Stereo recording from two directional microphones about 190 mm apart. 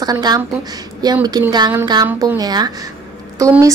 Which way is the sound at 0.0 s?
20° right (ahead or behind).